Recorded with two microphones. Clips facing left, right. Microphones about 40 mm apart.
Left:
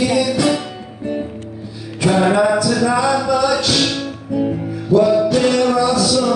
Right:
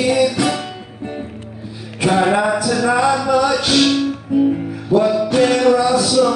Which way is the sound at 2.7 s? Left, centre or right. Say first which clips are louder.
Even; centre.